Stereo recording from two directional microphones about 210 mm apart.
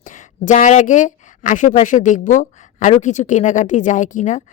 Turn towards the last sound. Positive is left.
turn(degrees=35)  # may be behind; listen again after turning